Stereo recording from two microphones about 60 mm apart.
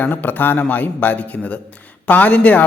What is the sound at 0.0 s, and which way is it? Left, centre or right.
A man's voice, left.